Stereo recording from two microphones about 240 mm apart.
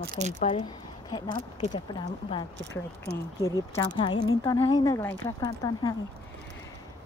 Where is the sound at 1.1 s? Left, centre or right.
Centre.